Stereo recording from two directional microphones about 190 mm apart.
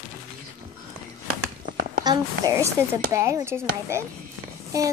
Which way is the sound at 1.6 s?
45° right (ahead or behind).